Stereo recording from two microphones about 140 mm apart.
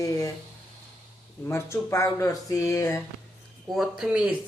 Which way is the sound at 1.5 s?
20° left (ahead or behind).